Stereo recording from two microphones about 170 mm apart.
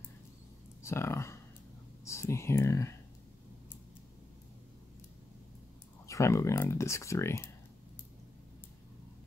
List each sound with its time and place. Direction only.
0.8 s a sound: 15° left (ahead or behind)
2.0 s speech: 15° left (ahead or behind)
6.0 s speech: 20° left (ahead or behind)